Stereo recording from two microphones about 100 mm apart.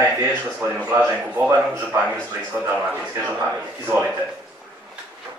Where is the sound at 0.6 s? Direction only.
15° right (ahead or behind).